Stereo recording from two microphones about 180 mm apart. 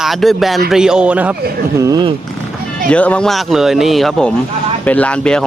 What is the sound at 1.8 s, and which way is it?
Speech, 25° right (ahead or behind).